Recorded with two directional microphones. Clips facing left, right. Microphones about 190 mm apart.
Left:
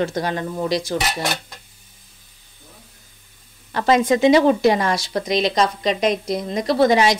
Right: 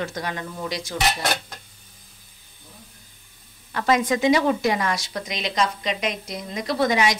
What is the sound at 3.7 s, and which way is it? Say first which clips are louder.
A woman's voice: left 4 dB; 30° left (ahead or behind).